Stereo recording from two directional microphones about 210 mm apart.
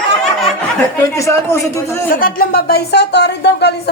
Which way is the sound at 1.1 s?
15° left (ahead or behind).